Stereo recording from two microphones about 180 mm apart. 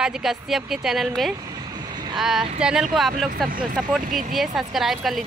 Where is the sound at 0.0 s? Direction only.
Centre (ahead or behind).